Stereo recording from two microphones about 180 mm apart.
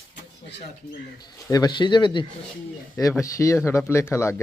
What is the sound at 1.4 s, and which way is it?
Speech, 20° left (ahead or behind).